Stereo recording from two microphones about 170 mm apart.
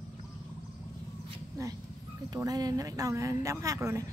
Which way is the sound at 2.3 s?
20° right (ahead or behind).